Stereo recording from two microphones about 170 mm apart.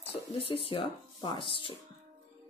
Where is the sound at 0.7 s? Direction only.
30° left (ahead or behind).